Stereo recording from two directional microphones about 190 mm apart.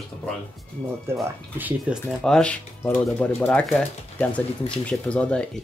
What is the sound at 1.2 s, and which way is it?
Speech, 5° right (ahead or behind).